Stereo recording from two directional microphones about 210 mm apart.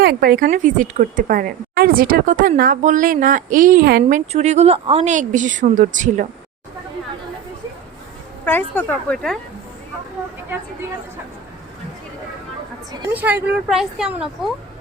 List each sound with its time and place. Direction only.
0.0 s a woman's voice: 45° right (ahead or behind)
4.3 s a woman's voice: 30° right (ahead or behind)
8.4 s speech: 10° left (ahead or behind)
12.9 s speech: 10° right (ahead or behind)